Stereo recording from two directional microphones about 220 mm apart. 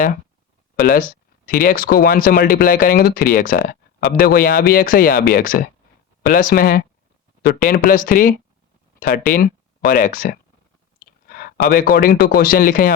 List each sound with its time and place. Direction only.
0.8 s a man's voice: 40° left (ahead or behind)